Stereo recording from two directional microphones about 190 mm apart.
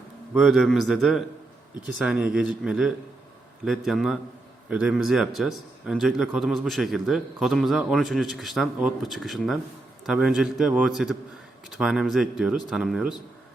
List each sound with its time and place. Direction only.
0.3 s a man's voice: centre (ahead or behind)